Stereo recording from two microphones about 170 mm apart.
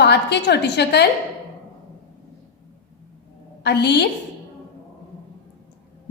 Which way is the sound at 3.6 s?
80° left.